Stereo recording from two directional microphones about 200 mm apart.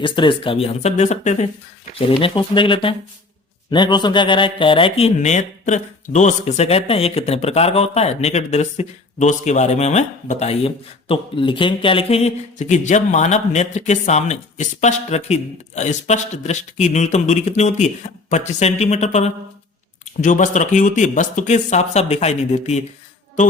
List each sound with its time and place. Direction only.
0.0 s speech: 25° left (ahead or behind)